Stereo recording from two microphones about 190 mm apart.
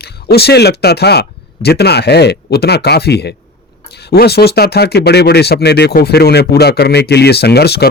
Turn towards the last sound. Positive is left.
turn(degrees=55)  # may be behind; listen again after turning